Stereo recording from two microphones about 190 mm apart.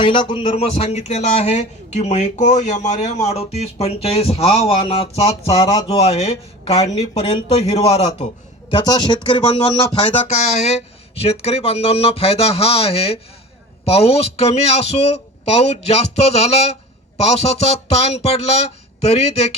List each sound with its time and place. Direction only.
0.0 s speech: 25° left (ahead or behind)
8.7 s speech: 20° left (ahead or behind)